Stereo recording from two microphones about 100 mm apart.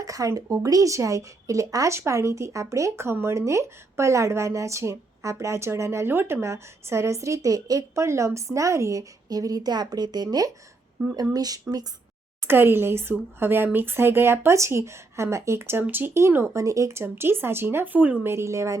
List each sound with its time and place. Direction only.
0.0 s speech: 35° right (ahead or behind)
12.5 s speech: 20° right (ahead or behind)